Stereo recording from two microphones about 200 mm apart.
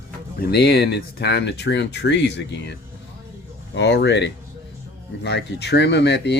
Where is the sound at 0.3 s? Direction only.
55° left (ahead or behind).